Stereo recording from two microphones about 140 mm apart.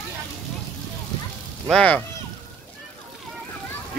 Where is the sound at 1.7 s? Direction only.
10° left (ahead or behind).